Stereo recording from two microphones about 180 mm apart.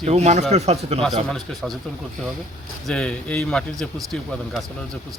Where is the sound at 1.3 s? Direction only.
Centre (ahead or behind).